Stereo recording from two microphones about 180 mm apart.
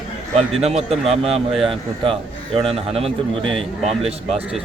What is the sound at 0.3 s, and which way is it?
A man's voice, 35° right (ahead or behind).